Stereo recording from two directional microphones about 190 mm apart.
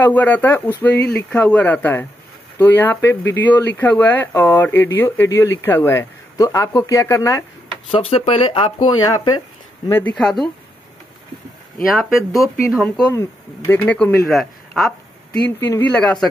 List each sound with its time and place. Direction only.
0.0 s speech: 10° left (ahead or behind)
7.9 s speech: 30° left (ahead or behind)
9.8 s speech: 10° left (ahead or behind)
12.7 s speech: centre (ahead or behind)
13.1 s speech: 15° left (ahead or behind)